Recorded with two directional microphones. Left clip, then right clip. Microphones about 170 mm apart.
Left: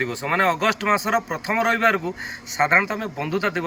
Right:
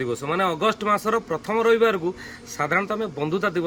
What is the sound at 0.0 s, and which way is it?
Speech, 20° right (ahead or behind).